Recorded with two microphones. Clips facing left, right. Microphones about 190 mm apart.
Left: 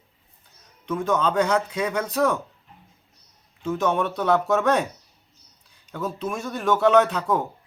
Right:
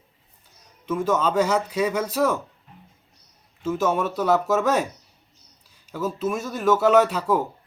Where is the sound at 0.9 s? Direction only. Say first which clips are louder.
Right 1 dB; 5° right (ahead or behind).